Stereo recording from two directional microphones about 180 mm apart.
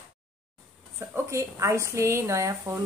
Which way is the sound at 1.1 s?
15° right (ahead or behind).